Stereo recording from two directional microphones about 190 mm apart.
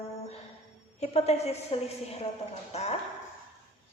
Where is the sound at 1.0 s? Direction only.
35° left (ahead or behind).